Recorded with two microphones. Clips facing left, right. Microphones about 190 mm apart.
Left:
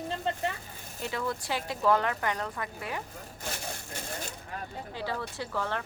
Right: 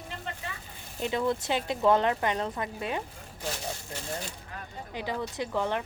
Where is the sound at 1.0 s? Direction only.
20° right (ahead or behind).